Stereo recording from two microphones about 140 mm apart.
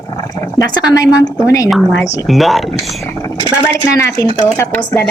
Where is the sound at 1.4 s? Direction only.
25° left (ahead or behind).